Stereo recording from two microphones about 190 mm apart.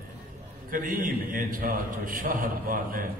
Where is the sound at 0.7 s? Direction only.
45° right (ahead or behind).